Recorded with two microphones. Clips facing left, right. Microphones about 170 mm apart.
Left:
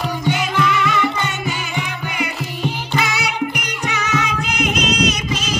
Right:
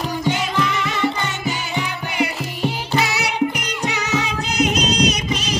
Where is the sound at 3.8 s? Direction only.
35° right (ahead or behind).